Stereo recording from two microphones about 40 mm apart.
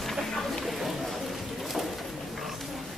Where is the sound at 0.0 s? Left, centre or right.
Centre.